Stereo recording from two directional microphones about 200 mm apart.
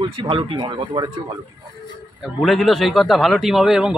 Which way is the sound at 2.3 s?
Centre (ahead or behind).